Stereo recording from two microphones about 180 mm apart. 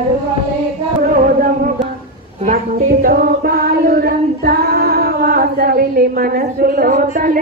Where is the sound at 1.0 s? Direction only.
50° right (ahead or behind).